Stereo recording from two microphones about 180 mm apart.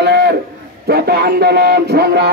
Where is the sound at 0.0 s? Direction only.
65° right (ahead or behind).